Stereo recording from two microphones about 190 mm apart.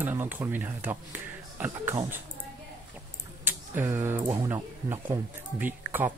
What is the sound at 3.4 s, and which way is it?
Speech, 10° right (ahead or behind).